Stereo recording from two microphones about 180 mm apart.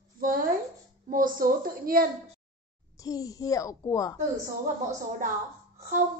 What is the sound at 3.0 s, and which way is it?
Speech, 20° left (ahead or behind).